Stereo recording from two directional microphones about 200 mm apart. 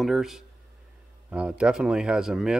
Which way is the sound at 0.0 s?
Centre (ahead or behind).